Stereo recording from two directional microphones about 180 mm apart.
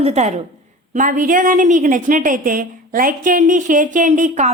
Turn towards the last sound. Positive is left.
turn(degrees=-45)  # may be behind; listen again after turning